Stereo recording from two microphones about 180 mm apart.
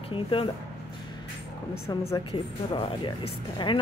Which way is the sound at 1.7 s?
20° left (ahead or behind).